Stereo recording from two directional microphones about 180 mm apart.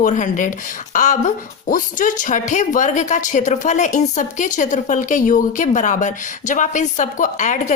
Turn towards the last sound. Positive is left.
turn(degrees=45)  # may be behind; listen again after turning